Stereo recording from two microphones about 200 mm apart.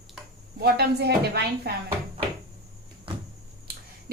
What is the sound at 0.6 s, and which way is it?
A woman's voice, 55° right (ahead or behind).